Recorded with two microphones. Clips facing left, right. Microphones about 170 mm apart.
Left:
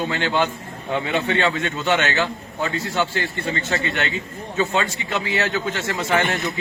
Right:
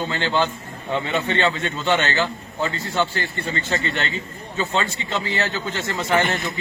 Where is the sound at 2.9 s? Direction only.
15° left (ahead or behind).